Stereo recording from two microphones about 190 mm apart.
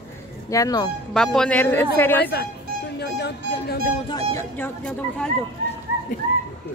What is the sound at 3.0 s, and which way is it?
Speech, 60° left (ahead or behind).